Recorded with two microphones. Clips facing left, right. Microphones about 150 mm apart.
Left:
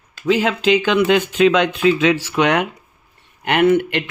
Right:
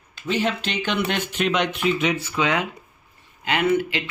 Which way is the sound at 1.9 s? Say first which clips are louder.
Left 7 dB; 90° left.